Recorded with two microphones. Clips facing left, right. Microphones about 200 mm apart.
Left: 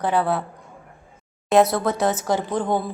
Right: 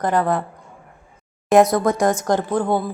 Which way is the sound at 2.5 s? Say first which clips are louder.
Right 3 dB; 10° right (ahead or behind).